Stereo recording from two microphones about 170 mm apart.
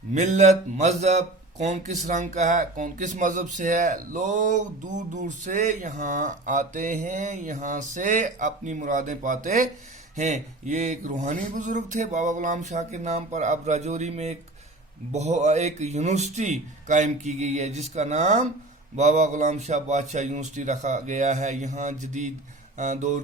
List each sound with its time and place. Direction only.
0.1 s speech: 45° right (ahead or behind)